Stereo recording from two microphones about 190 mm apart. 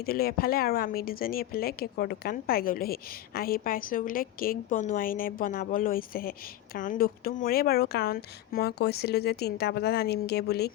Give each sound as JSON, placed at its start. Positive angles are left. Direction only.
{"t": 0.0, "sound": "speech", "side_deg": 55}